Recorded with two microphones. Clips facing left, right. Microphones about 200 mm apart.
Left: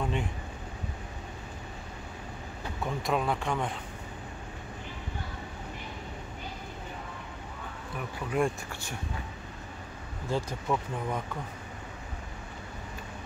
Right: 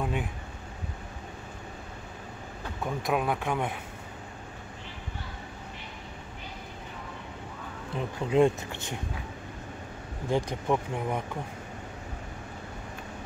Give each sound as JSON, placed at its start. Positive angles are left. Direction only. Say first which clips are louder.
{"t": 0.0, "sound": "a sound", "louder": "right 1 dB", "side_deg": -5}
{"t": 2.8, "sound": "speech", "louder": "right 1 dB", "side_deg": 0}
{"t": 7.9, "sound": "speech", "louder": "right 6 dB", "side_deg": -25}
{"t": 10.3, "sound": "speech", "louder": "right 3 dB", "side_deg": -15}